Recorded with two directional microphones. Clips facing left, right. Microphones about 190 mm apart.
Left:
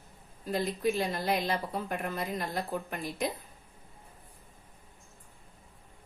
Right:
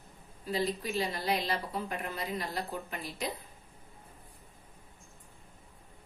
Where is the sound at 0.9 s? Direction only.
50° left (ahead or behind).